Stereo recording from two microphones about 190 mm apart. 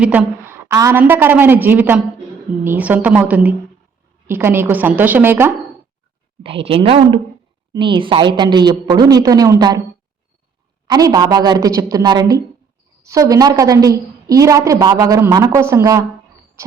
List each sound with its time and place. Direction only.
0.0 s a woman's voice: 5° right (ahead or behind)
6.4 s a woman's voice: 30° right (ahead or behind)
10.8 s a woman's voice: 20° right (ahead or behind)
16.6 s a sound: 15° right (ahead or behind)